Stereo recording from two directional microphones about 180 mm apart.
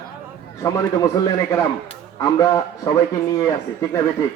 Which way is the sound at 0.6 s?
15° left (ahead or behind).